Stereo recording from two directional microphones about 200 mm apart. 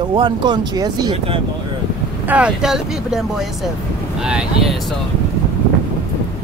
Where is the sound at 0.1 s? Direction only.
25° right (ahead or behind).